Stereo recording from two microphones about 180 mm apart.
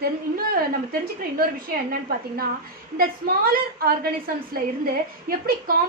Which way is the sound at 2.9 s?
55° right (ahead or behind).